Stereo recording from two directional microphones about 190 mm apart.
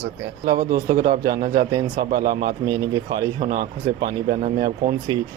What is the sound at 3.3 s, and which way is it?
Speech, 50° right (ahead or behind).